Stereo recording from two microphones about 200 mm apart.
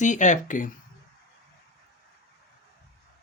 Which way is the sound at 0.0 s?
40° left (ahead or behind).